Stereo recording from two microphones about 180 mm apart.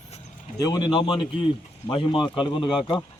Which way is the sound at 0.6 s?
25° left (ahead or behind).